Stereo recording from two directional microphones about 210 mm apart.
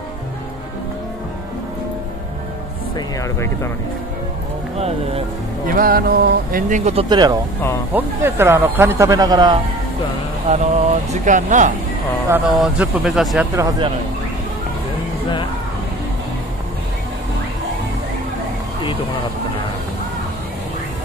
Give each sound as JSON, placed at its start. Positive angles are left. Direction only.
{"t": 4.7, "sound": "speech", "side_deg": -30}
{"t": 5.7, "sound": "speech", "side_deg": -45}
{"t": 10.5, "sound": "speech", "side_deg": -35}
{"t": 12.5, "sound": "speech", "side_deg": -5}
{"t": 13.6, "sound": "speech", "side_deg": -20}